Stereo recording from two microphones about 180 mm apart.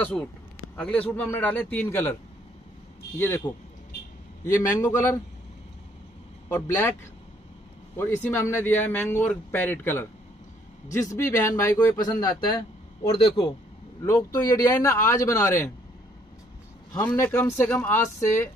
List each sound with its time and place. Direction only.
0.7 s speech: 5° left (ahead or behind)
3.2 s speech: 10° left (ahead or behind)
6.5 s speech: 15° left (ahead or behind)
14.0 s speech: 15° left (ahead or behind)
16.9 s speech: 10° left (ahead or behind)